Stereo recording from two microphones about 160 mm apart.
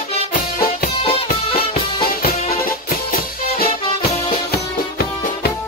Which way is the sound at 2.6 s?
65° left (ahead or behind).